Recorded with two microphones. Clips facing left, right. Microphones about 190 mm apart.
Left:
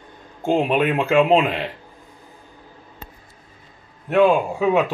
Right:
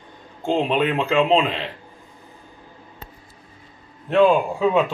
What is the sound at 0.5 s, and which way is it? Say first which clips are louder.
Speech: left 2 dB; 10° left (ahead or behind).